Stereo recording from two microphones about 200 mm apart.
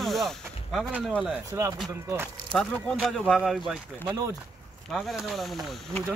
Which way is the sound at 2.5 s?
Centre (ahead or behind).